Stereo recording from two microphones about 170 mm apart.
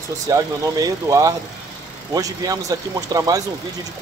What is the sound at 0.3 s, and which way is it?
Speech, 20° right (ahead or behind).